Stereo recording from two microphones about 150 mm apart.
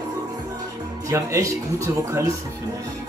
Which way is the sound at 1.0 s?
20° right (ahead or behind).